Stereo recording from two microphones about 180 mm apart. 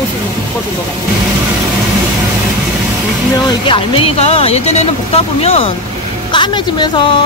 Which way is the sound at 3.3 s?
30° left (ahead or behind).